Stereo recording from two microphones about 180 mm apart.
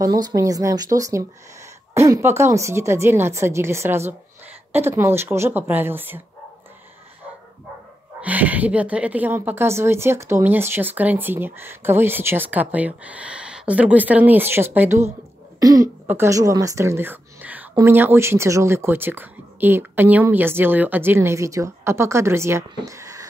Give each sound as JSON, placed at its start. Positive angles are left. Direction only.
{"t": 0.0, "sound": "speech", "side_deg": -20}
{"t": 8.2, "sound": "speech", "side_deg": -10}